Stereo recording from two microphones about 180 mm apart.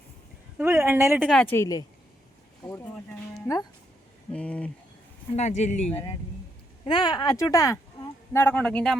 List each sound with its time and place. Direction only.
0.6 s a woman's voice: 15° right (ahead or behind)
1.3 s speech: 5° left (ahead or behind)
1.5 s speech: 20° left (ahead or behind)
5.4 s speech: 40° left (ahead or behind)
5.8 s speech: 10° left (ahead or behind)
6.8 s speech: 25° left (ahead or behind); by 9.0 s 5° left (ahead or behind)